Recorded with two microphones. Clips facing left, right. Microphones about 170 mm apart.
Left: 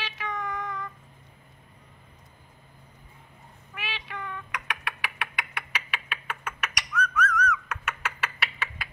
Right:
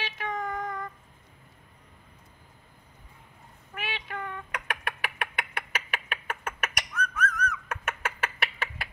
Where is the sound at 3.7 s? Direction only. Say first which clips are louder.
Right 2 dB; 50° right (ahead or behind).